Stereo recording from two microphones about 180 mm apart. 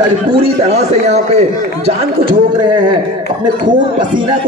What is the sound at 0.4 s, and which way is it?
A man's voice, 35° right (ahead or behind).